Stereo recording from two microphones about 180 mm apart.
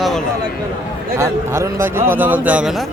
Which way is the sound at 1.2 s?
15° right (ahead or behind).